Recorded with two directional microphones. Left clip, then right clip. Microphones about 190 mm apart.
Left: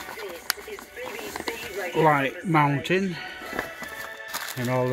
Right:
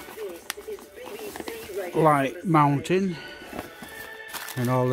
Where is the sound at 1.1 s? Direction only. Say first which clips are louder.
Left 3 dB; 5° right (ahead or behind).